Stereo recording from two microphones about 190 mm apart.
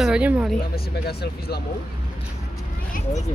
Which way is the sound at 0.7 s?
55° left (ahead or behind).